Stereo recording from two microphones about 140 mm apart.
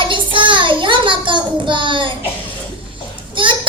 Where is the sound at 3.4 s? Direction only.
35° right (ahead or behind).